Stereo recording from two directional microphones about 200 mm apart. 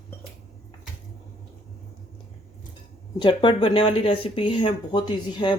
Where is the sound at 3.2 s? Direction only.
25° left (ahead or behind).